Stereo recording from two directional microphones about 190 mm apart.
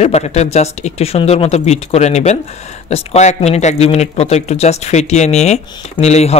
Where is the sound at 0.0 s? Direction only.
35° left (ahead or behind).